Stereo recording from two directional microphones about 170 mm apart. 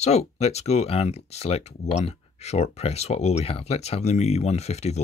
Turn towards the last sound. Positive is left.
turn(degrees=40)  # may be behind; listen again after turning